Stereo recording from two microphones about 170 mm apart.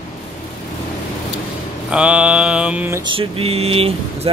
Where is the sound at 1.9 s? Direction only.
5° right (ahead or behind).